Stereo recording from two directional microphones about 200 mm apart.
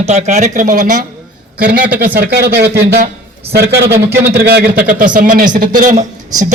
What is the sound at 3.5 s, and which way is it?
Speech, 55° right (ahead or behind).